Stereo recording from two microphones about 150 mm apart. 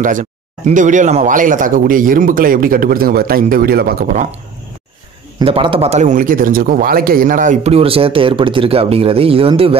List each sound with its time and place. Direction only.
0.0 s speech: 60° right (ahead or behind)
5.4 s speech: 35° right (ahead or behind); by 7.7 s 60° right (ahead or behind)
7.7 s speech: 40° right (ahead or behind)